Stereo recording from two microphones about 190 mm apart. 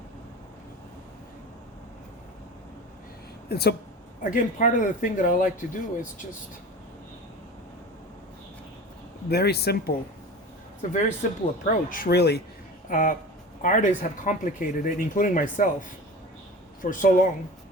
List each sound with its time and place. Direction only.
3.5 s speech: 55° left (ahead or behind)
4.2 s speech: 45° left (ahead or behind)
9.3 s speech: 55° left (ahead or behind)
10.9 s speech: 40° left (ahead or behind); by 12.4 s 60° left (ahead or behind)
12.9 s speech: 45° left (ahead or behind)
16.8 s speech: 45° left (ahead or behind)